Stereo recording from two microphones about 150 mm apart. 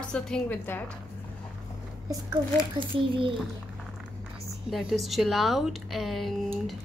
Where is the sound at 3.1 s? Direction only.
35° right (ahead or behind).